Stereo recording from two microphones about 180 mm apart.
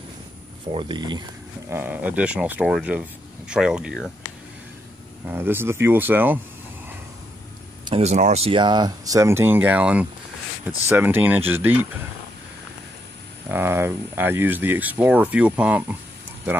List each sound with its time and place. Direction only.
0.7 s speech: 25° right (ahead or behind)
1.7 s speech: 10° right (ahead or behind)
5.2 s speech: 10° right (ahead or behind)
7.8 s speech: 35° right (ahead or behind); by 11.9 s 10° right (ahead or behind)
13.5 s speech: 15° right (ahead or behind)